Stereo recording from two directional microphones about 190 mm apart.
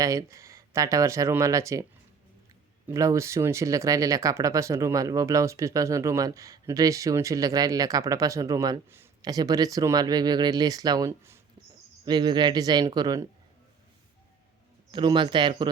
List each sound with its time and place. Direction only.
0.0 s speech: 15° right (ahead or behind)
14.9 s speech: 25° right (ahead or behind)